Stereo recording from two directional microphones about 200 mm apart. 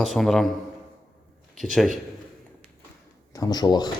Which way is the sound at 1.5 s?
Centre (ahead or behind).